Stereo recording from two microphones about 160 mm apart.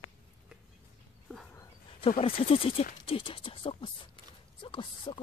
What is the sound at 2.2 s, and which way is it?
Speech, 35° left (ahead or behind).